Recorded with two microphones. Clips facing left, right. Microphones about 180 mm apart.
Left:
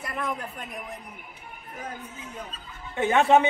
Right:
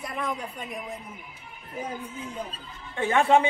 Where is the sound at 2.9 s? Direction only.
20° left (ahead or behind).